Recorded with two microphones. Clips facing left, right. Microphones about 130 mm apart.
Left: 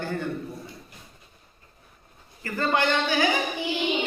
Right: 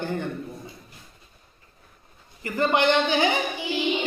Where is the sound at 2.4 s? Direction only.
20° right (ahead or behind).